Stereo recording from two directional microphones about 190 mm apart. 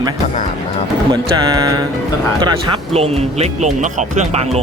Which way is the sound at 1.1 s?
20° right (ahead or behind).